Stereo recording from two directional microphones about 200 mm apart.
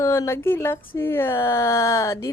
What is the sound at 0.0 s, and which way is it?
Speech, 15° left (ahead or behind).